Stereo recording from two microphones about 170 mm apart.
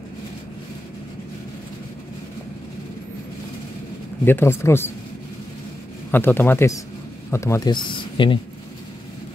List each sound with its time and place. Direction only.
4.2 s speech: 15° left (ahead or behind)
6.1 s speech: 10° left (ahead or behind); by 8.4 s 30° left (ahead or behind)